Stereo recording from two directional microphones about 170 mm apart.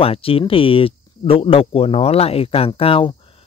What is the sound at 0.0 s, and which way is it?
Speech, 35° left (ahead or behind).